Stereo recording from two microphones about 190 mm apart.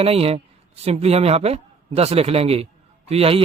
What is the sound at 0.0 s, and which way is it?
A man's voice, 30° right (ahead or behind).